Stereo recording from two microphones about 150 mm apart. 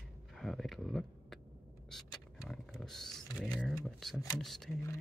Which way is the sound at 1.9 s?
Centre (ahead or behind).